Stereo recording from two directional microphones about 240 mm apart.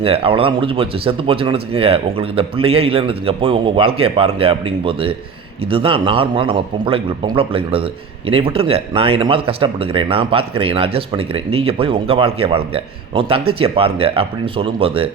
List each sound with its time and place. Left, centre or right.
0.0 s speech: right